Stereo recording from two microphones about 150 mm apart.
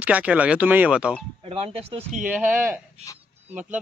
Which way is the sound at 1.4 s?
40° right (ahead or behind).